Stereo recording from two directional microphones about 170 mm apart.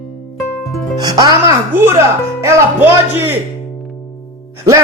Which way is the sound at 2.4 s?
10° right (ahead or behind).